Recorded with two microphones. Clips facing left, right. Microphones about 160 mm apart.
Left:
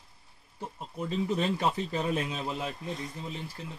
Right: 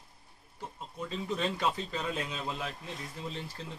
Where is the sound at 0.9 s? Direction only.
25° left (ahead or behind).